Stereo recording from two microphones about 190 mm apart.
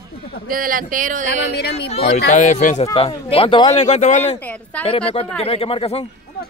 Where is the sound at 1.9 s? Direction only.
35° left (ahead or behind).